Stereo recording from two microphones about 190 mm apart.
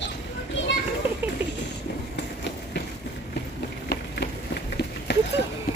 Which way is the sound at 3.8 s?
60° left (ahead or behind).